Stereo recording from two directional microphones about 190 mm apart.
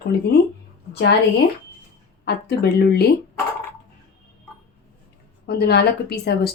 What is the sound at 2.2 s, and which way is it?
Speech, 55° left (ahead or behind).